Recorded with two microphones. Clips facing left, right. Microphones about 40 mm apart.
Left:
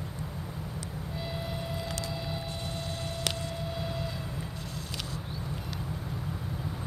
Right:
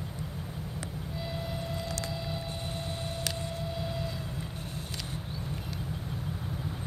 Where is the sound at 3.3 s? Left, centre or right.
Left.